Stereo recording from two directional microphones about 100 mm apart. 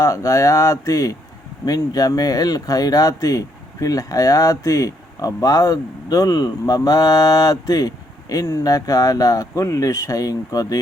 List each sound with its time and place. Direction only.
0.0 s speech: 30° left (ahead or behind)